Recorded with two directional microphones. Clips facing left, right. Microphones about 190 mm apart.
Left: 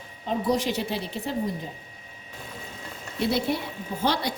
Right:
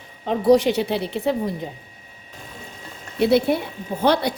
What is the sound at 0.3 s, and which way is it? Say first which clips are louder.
A woman's voice: right 9 dB; 65° right (ahead or behind).